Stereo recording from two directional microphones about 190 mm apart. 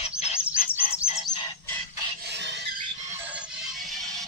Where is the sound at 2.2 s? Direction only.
65° right (ahead or behind).